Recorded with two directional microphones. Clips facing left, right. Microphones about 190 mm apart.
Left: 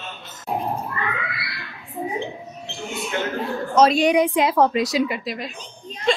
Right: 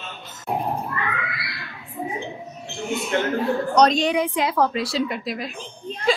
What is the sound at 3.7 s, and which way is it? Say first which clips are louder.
A woman's voice: left 3 dB; 10° left (ahead or behind).